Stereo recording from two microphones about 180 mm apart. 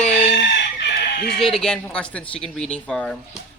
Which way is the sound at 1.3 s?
5° left (ahead or behind).